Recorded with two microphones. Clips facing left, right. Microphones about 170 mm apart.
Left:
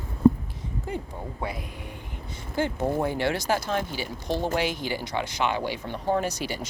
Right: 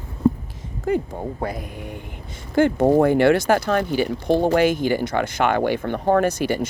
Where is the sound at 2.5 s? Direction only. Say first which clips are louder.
Right 10 dB; 60° right (ahead or behind).